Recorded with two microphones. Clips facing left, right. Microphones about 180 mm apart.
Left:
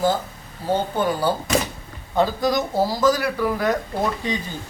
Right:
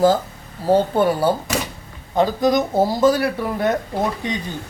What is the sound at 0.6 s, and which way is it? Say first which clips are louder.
Speech: right 6 dB; 30° right (ahead or behind).